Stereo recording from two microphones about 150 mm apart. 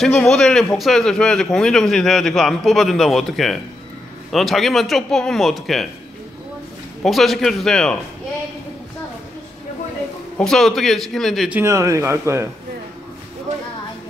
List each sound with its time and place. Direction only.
0.0 s a man's voice: centre (ahead or behind)
7.0 s a man's voice: centre (ahead or behind)
10.3 s a man's voice: 5° left (ahead or behind)
11.5 s speech: 20° right (ahead or behind)